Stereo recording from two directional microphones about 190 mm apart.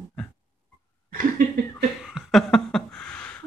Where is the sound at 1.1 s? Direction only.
50° right (ahead or behind).